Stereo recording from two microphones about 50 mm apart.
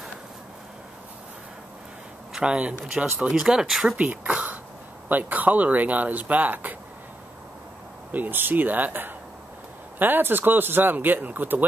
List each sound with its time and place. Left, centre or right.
2.3 s speech: centre
3.9 s speech: right
8.1 s speech: right